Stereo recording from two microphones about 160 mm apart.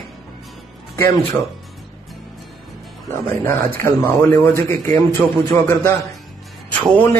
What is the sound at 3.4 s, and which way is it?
Speech, 15° left (ahead or behind).